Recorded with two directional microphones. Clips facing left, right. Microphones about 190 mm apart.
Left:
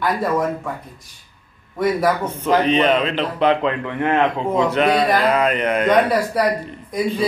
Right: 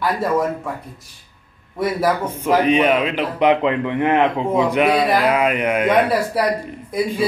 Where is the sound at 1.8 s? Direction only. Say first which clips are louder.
Left 1 dB; 5° right (ahead or behind).